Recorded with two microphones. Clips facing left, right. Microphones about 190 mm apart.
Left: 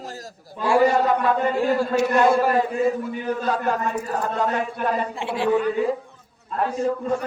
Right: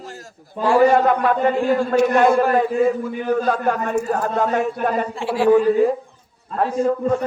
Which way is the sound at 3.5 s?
50° right (ahead or behind).